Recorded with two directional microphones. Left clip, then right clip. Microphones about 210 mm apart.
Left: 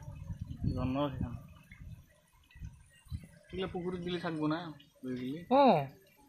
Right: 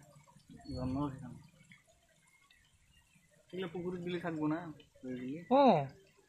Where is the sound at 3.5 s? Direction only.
50° left (ahead or behind).